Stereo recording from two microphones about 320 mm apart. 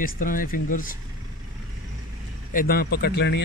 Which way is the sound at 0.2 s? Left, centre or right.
Left.